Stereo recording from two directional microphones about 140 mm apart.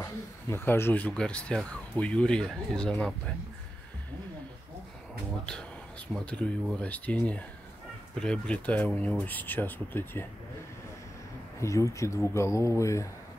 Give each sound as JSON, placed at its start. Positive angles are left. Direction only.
{"t": 0.0, "sound": "speech", "side_deg": 15}
{"t": 5.4, "sound": "speech", "side_deg": 5}
{"t": 11.6, "sound": "speech", "side_deg": 20}